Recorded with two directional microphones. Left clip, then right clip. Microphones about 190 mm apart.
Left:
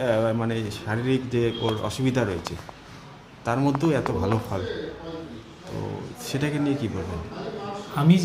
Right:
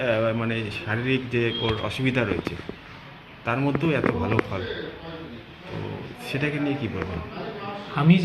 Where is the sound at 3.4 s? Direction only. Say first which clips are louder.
Left 1 dB; 30° left (ahead or behind).